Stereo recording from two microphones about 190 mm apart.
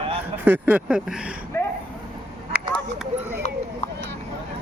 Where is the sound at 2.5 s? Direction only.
10° right (ahead or behind).